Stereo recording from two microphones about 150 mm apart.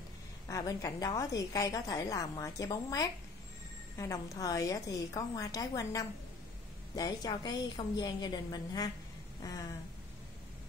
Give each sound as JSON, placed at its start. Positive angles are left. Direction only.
{"t": 0.5, "sound": "a woman's voice", "side_deg": 25}